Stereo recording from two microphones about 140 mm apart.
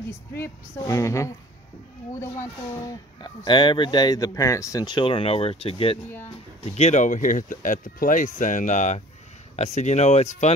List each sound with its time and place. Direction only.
0.4 s a woman's voice: 20° left (ahead or behind)
2.7 s speech: 30° left (ahead or behind); by 10.5 s 55° left (ahead or behind)